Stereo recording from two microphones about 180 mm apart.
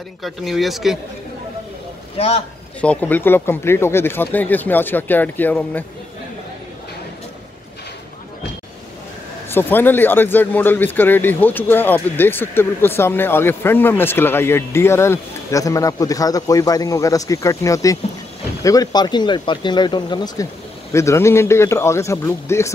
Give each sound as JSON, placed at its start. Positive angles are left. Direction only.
{"t": 0.2, "sound": "speech", "side_deg": 0}
{"t": 2.1, "sound": "a man's voice", "side_deg": 35}
{"t": 2.8, "sound": "speech", "side_deg": 10}
{"t": 9.5, "sound": "speech", "side_deg": 10}